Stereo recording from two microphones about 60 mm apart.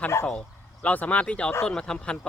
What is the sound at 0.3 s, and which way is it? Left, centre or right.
Speech, left.